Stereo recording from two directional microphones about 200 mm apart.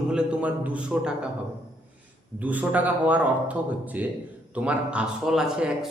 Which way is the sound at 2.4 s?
5° right (ahead or behind).